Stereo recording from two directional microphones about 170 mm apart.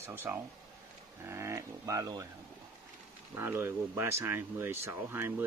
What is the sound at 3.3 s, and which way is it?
Speech, 15° right (ahead or behind).